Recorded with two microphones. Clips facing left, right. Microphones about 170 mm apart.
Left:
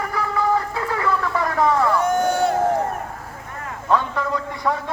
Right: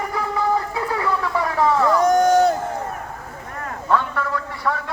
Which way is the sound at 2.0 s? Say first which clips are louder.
Right 5 dB; 40° right (ahead or behind).